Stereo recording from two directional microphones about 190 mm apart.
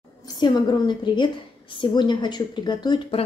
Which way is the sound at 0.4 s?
20° left (ahead or behind).